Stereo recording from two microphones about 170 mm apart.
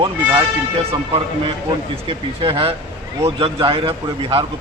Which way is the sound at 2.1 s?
30° right (ahead or behind).